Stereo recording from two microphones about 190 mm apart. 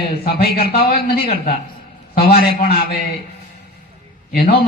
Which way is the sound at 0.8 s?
50° left (ahead or behind).